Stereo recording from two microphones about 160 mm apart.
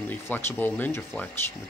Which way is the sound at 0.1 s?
10° left (ahead or behind).